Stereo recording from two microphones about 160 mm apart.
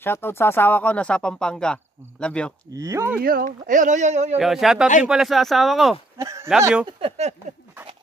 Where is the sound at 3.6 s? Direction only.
50° right (ahead or behind).